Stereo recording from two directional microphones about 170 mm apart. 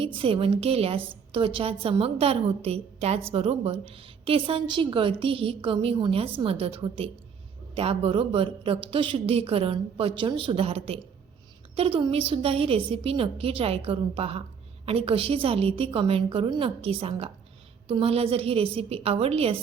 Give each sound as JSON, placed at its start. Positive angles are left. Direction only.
{"t": 0.0, "sound": "a woman's voice", "side_deg": -30}